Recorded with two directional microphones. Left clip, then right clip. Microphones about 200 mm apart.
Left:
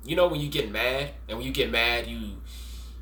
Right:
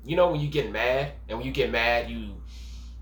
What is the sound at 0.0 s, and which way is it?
Speech, 15° left (ahead or behind).